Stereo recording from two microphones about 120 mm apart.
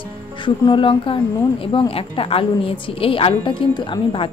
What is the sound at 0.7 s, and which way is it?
A woman's voice, 45° left (ahead or behind).